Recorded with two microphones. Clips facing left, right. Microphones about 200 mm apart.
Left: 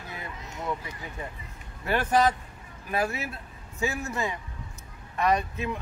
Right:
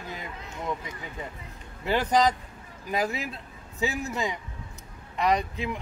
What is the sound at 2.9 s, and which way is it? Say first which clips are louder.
Speech: even; 15° right (ahead or behind).